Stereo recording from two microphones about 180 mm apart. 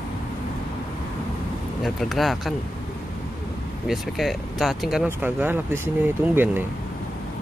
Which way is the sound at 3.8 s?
Centre (ahead or behind).